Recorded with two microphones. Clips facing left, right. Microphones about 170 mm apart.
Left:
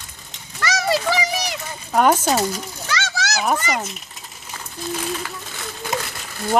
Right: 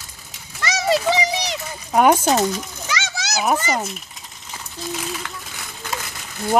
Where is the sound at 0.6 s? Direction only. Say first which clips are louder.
Right 1 dB; 20° right (ahead or behind).